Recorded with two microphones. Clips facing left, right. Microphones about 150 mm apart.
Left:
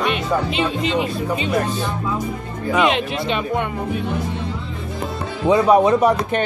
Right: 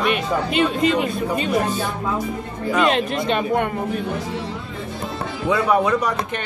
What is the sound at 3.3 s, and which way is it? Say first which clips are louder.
Speech: right 2 dB; 50° right (ahead or behind).